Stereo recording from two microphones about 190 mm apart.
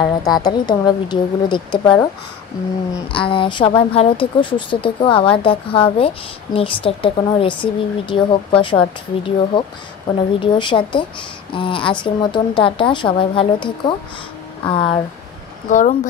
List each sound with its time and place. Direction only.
0.0 s speech: 20° left (ahead or behind)
3.1 s speech: 25° left (ahead or behind)
15.7 s speech: 40° left (ahead or behind)